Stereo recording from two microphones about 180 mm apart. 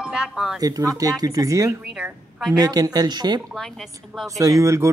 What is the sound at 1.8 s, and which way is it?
Speech, 5° right (ahead or behind).